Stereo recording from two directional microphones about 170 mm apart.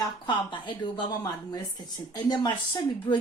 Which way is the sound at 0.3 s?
25° left (ahead or behind).